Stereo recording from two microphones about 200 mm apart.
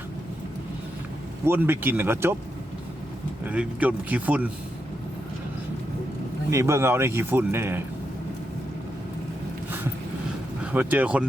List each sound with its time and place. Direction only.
1.5 s speech: 10° right (ahead or behind)
3.4 s speech: 5° right (ahead or behind)
6.5 s speech: 15° right (ahead or behind)
10.6 s speech: 10° right (ahead or behind)